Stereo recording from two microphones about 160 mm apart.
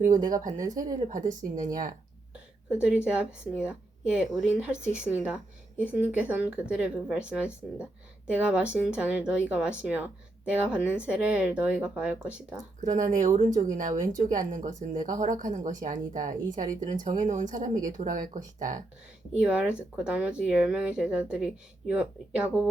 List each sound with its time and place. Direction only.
0.6 s speech: 25° right (ahead or behind)
1.3 s speech: 55° right (ahead or behind)
2.3 s a woman's voice: 5° right (ahead or behind)
4.8 s speech: 50° right (ahead or behind)
5.0 s speech: 10° right (ahead or behind)
12.8 s speech: 55° right (ahead or behind)
19.4 s speech: 5° right (ahead or behind)